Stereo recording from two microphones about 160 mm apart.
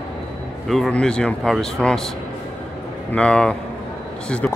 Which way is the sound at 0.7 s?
Centre (ahead or behind).